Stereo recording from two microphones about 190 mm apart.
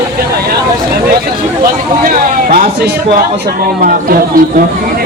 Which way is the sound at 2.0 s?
45° right (ahead or behind).